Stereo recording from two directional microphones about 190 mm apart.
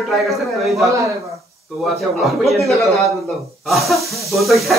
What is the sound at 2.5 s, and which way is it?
A man's voice, centre (ahead or behind).